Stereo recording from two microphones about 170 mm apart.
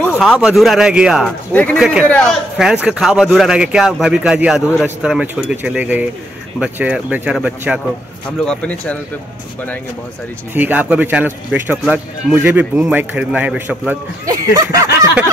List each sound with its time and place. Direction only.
0.2 s speech: centre (ahead or behind)
1.5 s speech: 10° left (ahead or behind)
1.8 s speech: 5° right (ahead or behind)
2.0 s speech: 5° left (ahead or behind)
2.5 s a man's voice: 5° right (ahead or behind)
8.5 s speech: 5° left (ahead or behind)
10.5 s a man's voice: 10° right (ahead or behind)
14.2 s a sound: 20° right (ahead or behind)